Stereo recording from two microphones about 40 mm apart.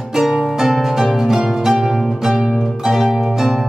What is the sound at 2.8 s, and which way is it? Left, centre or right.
Harp, centre.